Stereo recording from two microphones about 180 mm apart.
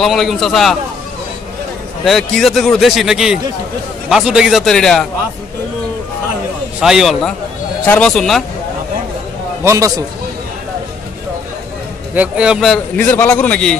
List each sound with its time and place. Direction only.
0.0 s a man's voice: centre (ahead or behind)
2.0 s a man's voice: centre (ahead or behind)
6.8 s a man's voice: centre (ahead or behind)
9.7 s a man's voice: 20° right (ahead or behind)
12.2 s a man's voice: 5° right (ahead or behind)
13.0 s a man's voice: 10° left (ahead or behind)